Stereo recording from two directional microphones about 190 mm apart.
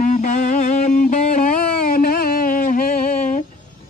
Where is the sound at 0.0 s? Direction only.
40° left (ahead or behind).